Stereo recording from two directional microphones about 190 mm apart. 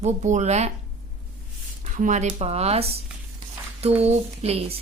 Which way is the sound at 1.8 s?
40° right (ahead or behind).